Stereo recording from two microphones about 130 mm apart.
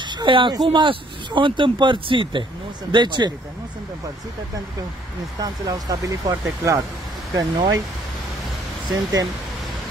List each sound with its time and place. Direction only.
0.0 s speech: 35° right (ahead or behind)
5.4 s speech: 30° right (ahead or behind)
8.8 s speech: 30° right (ahead or behind)